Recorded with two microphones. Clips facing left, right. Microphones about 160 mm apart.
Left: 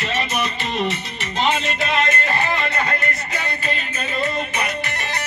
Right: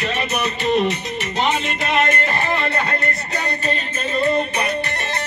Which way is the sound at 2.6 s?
35° right (ahead or behind).